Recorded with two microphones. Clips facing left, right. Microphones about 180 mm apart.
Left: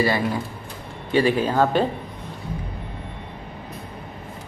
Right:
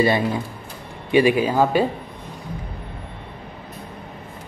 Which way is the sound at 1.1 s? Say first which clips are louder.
Right 3 dB; 10° right (ahead or behind).